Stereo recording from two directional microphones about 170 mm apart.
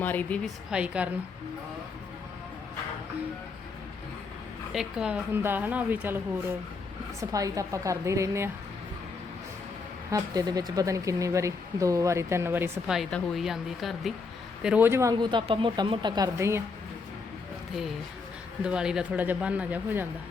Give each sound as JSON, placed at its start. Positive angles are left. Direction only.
{"t": 0.0, "sound": "a woman's voice", "side_deg": 10}
{"t": 0.7, "sound": "a woman's voice", "side_deg": -5}
{"t": 4.7, "sound": "a woman's voice", "side_deg": -5}
{"t": 10.1, "sound": "speech", "side_deg": -20}
{"t": 12.9, "sound": "speech", "side_deg": 0}
{"t": 18.6, "sound": "a woman's voice", "side_deg": -5}